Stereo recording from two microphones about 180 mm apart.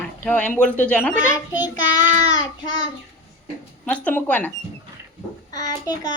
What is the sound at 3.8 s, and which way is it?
Speech, 10° left (ahead or behind).